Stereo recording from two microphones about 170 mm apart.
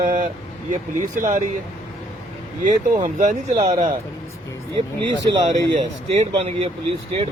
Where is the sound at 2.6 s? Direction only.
45° right (ahead or behind).